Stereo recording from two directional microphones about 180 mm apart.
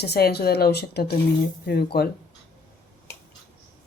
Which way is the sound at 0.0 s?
65° left (ahead or behind).